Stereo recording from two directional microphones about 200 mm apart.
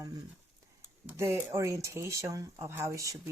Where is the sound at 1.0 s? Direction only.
15° right (ahead or behind).